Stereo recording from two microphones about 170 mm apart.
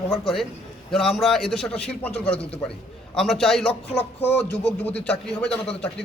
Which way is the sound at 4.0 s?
40° left (ahead or behind).